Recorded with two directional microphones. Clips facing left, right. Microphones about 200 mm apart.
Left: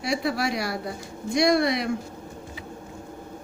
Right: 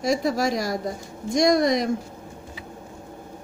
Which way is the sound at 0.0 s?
45° right (ahead or behind).